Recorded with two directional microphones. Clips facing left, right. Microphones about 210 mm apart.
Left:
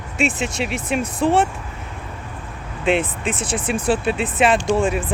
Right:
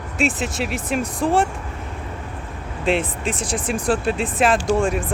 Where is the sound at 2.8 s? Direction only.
Centre (ahead or behind).